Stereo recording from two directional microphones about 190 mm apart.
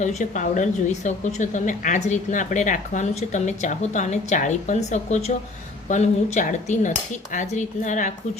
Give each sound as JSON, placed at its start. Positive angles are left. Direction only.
{"t": 0.0, "sound": "a woman's voice", "side_deg": 40}